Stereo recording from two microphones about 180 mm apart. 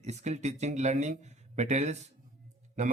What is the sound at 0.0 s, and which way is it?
Speech, 40° right (ahead or behind).